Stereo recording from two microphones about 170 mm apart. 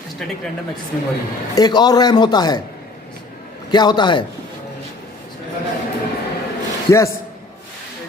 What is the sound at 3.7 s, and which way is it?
Speech, 25° left (ahead or behind).